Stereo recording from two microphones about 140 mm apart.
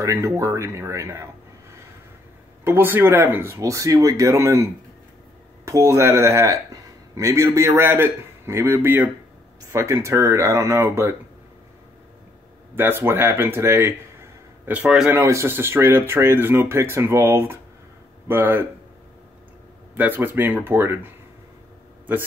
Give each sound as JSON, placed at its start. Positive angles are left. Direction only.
{"t": 0.0, "sound": "speech", "side_deg": -20}
{"t": 2.6, "sound": "speech", "side_deg": -15}
{"t": 5.7, "sound": "speech", "side_deg": -20}
{"t": 12.7, "sound": "speech", "side_deg": -15}
{"t": 14.7, "sound": "speech", "side_deg": -5}
{"t": 15.1, "sound": "speech", "side_deg": -20}
{"t": 20.0, "sound": "speech", "side_deg": -15}